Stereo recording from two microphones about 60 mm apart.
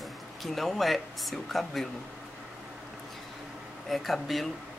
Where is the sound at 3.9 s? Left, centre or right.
Centre.